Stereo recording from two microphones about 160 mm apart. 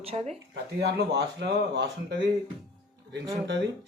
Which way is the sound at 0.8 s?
90° right.